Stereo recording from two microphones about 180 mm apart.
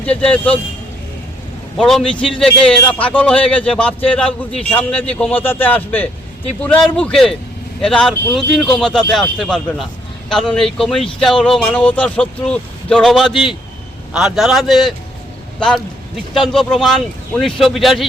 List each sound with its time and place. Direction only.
0.0 s a man's voice: 5° left (ahead or behind)
1.8 s a man's voice: centre (ahead or behind)
16.3 s speech: centre (ahead or behind)